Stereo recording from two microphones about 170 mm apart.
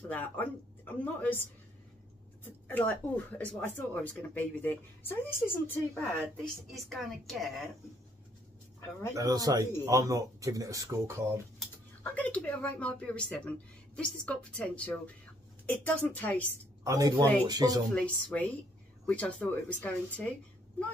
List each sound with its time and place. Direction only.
0.1 s speech: 10° left (ahead or behind)
9.1 s speech: 20° right (ahead or behind)
12.0 s speech: 10° left (ahead or behind)
16.4 s a woman's voice: 20° right (ahead or behind)
17.9 s speech: 10° left (ahead or behind)